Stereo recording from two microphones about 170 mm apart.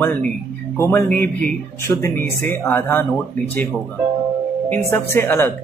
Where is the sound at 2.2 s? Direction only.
50° right (ahead or behind).